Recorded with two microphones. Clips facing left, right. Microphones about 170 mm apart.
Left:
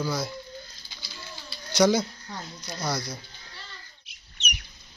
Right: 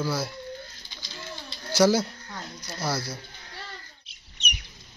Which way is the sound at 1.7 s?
10° right (ahead or behind).